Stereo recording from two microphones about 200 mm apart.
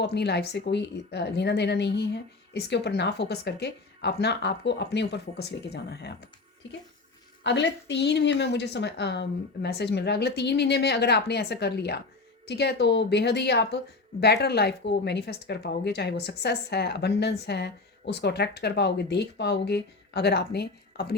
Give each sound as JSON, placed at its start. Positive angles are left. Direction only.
{"t": 0.0, "sound": "speech", "side_deg": 55}
{"t": 7.4, "sound": "speech", "side_deg": 60}